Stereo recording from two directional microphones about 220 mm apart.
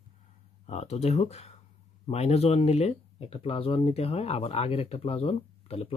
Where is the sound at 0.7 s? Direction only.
30° left (ahead or behind).